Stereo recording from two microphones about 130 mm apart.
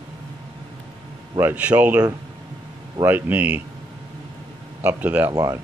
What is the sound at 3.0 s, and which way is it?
Speech, 15° right (ahead or behind).